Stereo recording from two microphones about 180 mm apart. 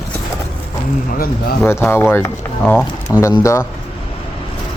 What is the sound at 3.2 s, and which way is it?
Speech, 15° left (ahead or behind).